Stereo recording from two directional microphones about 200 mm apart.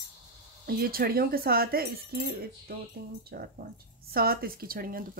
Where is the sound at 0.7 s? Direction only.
50° right (ahead or behind).